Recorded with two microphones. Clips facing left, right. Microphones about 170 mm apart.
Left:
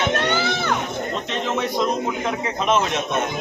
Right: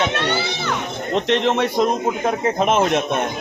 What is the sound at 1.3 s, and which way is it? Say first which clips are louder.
Speech: right 8 dB; 65° right (ahead or behind).